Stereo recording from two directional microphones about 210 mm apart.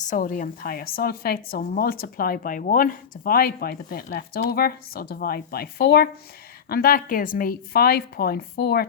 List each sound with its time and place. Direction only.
0.0 s a woman's voice: 40° left (ahead or behind)